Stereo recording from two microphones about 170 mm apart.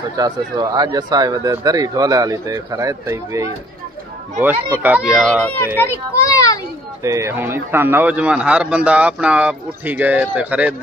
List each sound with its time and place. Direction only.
0.2 s a man's voice: 25° right (ahead or behind); by 5.4 s 5° right (ahead or behind)
5.8 s a child's voice: 15° left (ahead or behind)
7.0 s a man's voice: 15° right (ahead or behind)